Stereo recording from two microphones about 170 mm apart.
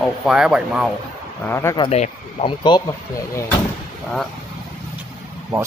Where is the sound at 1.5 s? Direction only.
15° left (ahead or behind).